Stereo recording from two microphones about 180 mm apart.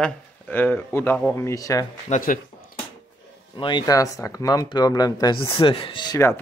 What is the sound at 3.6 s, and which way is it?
Speech, 25° left (ahead or behind).